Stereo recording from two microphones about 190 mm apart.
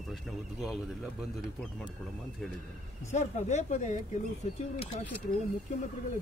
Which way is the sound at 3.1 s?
40° left (ahead or behind).